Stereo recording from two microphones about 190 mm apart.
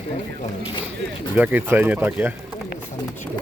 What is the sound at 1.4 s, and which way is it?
Speech, 10° right (ahead or behind).